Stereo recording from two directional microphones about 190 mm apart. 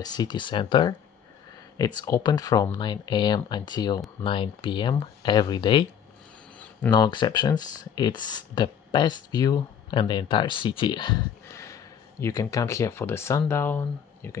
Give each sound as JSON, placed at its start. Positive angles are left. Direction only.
{"t": 0.0, "sound": "speech", "side_deg": 20}
{"t": 2.0, "sound": "speech", "side_deg": 20}
{"t": 6.9, "sound": "speech", "side_deg": 25}